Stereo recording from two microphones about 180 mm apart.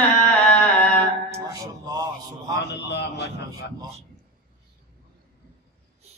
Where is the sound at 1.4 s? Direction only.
20° right (ahead or behind).